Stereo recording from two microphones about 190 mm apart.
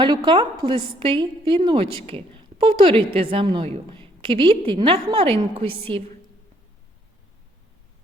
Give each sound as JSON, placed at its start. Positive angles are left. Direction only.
{"t": 0.0, "sound": "a woman's voice", "side_deg": -25}